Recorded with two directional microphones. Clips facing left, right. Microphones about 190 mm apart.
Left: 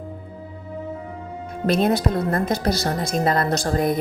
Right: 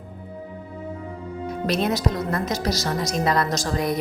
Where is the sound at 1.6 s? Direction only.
50° left (ahead or behind).